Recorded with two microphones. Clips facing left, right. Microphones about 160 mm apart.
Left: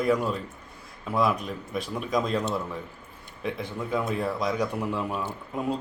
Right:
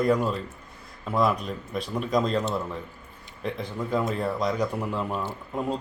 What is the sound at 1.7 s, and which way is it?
Speech, 5° left (ahead or behind).